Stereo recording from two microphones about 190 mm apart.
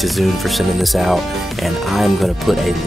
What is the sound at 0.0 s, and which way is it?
Speech, centre (ahead or behind).